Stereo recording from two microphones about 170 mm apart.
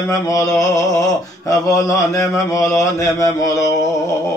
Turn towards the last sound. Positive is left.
turn(degrees=20)  # may be behind; listen again after turning